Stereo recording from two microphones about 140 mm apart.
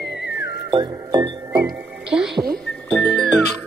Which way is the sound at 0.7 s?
25° right (ahead or behind).